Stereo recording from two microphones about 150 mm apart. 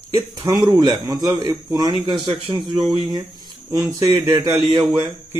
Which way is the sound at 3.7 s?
20° right (ahead or behind).